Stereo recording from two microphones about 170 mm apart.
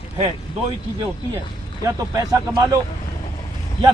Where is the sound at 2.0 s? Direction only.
20° right (ahead or behind).